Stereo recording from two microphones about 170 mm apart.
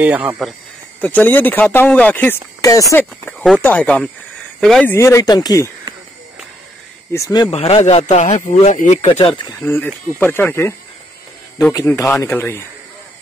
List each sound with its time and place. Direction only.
0.0 s speech: 10° right (ahead or behind)
1.0 s speech: 10° left (ahead or behind)
3.3 s speech: 10° left (ahead or behind)
7.1 s speech: 20° left (ahead or behind)
7.5 s speech: 40° left (ahead or behind)
9.2 s speech: 30° left (ahead or behind)
9.6 s speech: 15° left (ahead or behind)
11.7 s speech: 20° left (ahead or behind)